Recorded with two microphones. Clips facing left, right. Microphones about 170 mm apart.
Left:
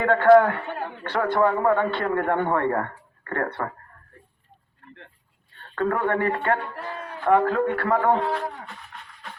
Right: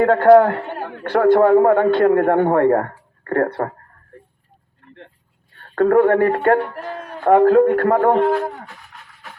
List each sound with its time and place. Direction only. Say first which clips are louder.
0.0 s a man's voice: right 5 dB; 40° right (ahead or behind)
5.5 s a man's voice: right 11 dB; 45° right (ahead or behind)
8.6 s dog: even; centre (ahead or behind)